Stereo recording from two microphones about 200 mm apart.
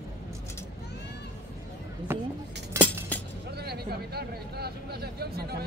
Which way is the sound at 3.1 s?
10° left (ahead or behind).